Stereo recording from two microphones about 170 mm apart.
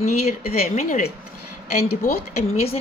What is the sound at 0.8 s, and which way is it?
Speech, 45° left (ahead or behind).